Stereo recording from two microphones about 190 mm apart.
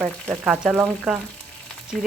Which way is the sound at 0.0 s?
10° right (ahead or behind).